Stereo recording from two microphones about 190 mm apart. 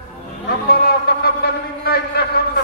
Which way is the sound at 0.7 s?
55° left (ahead or behind).